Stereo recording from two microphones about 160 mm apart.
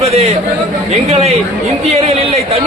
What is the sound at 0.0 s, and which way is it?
A man's voice, 40° right (ahead or behind).